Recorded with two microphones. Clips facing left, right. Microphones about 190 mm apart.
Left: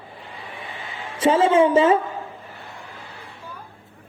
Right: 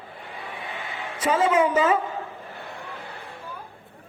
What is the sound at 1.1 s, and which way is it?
Speech, 25° left (ahead or behind).